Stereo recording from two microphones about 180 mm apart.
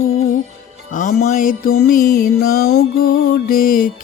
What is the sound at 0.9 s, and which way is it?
Music, 45° left (ahead or behind).